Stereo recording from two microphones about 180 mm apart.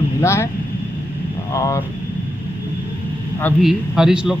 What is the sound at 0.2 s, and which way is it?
Speech, 15° left (ahead or behind).